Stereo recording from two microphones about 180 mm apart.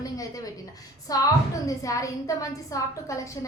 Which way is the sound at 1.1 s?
20° left (ahead or behind).